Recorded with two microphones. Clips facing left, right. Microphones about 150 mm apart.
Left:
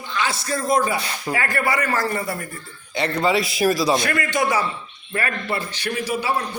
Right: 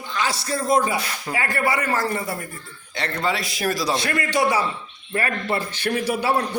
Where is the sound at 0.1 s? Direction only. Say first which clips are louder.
Even; 40° right (ahead or behind).